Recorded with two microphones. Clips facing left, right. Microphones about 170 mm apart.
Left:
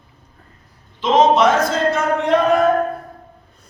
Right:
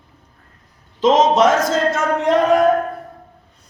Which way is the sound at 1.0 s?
40° right (ahead or behind).